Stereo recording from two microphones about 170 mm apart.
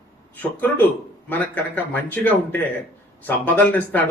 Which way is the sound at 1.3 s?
10° left (ahead or behind).